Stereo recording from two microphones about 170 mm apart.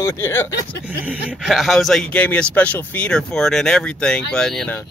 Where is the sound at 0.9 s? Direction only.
5° right (ahead or behind).